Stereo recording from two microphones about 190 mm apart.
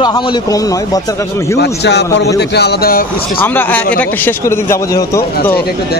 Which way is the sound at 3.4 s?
10° left (ahead or behind).